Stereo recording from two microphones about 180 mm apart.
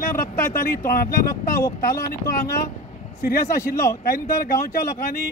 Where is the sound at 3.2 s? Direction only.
55° left (ahead or behind).